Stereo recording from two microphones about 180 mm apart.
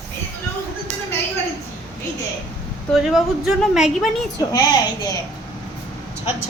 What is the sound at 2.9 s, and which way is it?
Speech, centre (ahead or behind).